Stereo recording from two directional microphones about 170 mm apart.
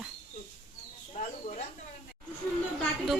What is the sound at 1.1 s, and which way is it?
Speech, 45° left (ahead or behind).